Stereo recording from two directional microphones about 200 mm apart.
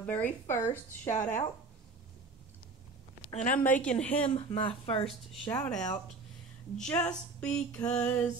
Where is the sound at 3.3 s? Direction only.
40° left (ahead or behind).